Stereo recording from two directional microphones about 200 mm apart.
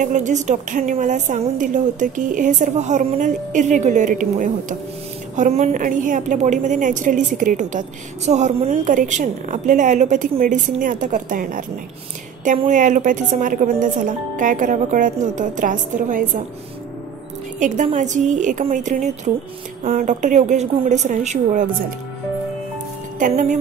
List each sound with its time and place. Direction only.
0.0 s a woman's voice: 40° right (ahead or behind)
17.6 s a woman's voice: 40° right (ahead or behind)
23.1 s a woman's voice: 40° right (ahead or behind)